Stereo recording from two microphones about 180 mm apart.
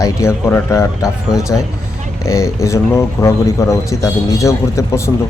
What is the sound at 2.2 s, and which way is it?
A man's voice, 15° left (ahead or behind).